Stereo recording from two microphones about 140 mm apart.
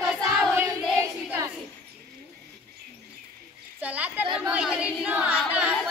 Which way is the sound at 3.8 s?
10° right (ahead or behind).